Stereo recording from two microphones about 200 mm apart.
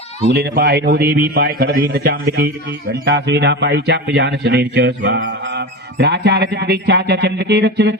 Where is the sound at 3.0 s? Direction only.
60° right (ahead or behind).